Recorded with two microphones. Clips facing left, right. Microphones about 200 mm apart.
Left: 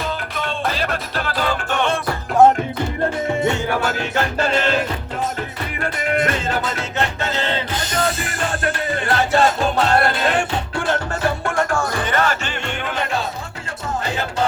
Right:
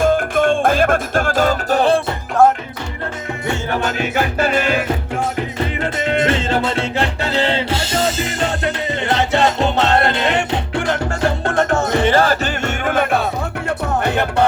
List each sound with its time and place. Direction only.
0.0 s music: 50° right (ahead or behind)
2.4 s music: 20° left (ahead or behind)
4.0 s music: 10° right (ahead or behind)
5.8 s music: 25° right (ahead or behind)
12.8 s music: 55° right (ahead or behind)